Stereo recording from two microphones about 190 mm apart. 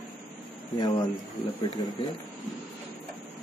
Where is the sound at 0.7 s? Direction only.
20° left (ahead or behind).